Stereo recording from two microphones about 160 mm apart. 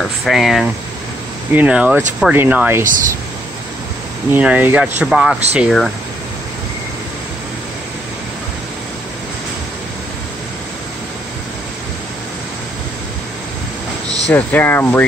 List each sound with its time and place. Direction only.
0.0 s speech: centre (ahead or behind)
4.3 s speech: 10° right (ahead or behind)
14.3 s speech: 10° left (ahead or behind)